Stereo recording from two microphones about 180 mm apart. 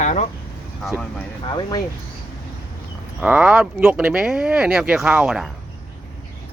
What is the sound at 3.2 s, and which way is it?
Speech, 5° right (ahead or behind).